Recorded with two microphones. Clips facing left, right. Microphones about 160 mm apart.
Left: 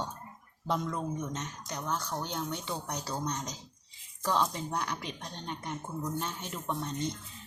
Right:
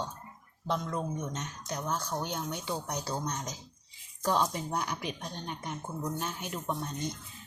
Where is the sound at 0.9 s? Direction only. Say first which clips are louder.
Even; 5° right (ahead or behind).